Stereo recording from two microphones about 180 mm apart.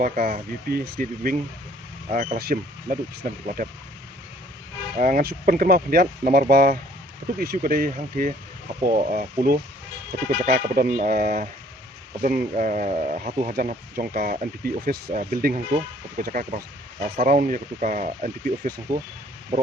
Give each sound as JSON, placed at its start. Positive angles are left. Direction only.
{"t": 0.0, "sound": "speech", "side_deg": -50}
{"t": 4.9, "sound": "speech", "side_deg": -50}